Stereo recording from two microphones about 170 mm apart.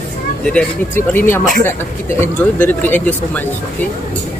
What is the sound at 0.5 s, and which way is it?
Speech, 10° left (ahead or behind).